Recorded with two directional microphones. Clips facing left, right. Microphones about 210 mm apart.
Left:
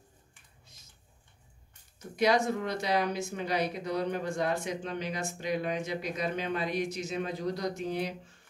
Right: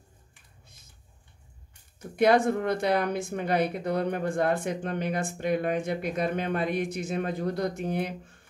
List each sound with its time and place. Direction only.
2.1 s speech: 55° right (ahead or behind)